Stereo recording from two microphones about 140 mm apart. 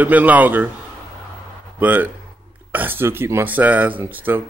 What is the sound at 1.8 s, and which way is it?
A man's voice, 10° right (ahead or behind).